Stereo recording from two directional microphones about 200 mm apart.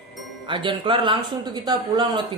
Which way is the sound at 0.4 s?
25° right (ahead or behind).